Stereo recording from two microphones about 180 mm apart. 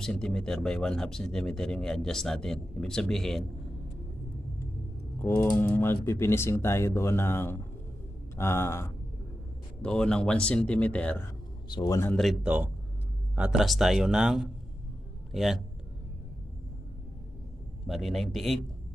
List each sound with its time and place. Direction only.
0.0 s speech: 5° left (ahead or behind)
5.2 s speech: 15° left (ahead or behind)
11.7 s a man's voice: 20° left (ahead or behind)
12.1 s a man's voice: centre (ahead or behind)
17.8 s speech: centre (ahead or behind)